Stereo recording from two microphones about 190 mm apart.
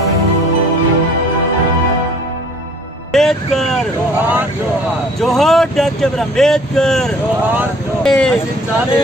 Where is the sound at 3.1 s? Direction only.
Centre (ahead or behind).